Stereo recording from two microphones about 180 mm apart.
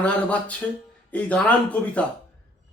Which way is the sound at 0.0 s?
10° left (ahead or behind).